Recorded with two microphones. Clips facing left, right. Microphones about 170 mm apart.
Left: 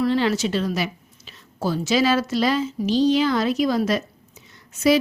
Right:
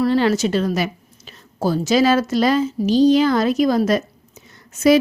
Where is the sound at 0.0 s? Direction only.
40° right (ahead or behind).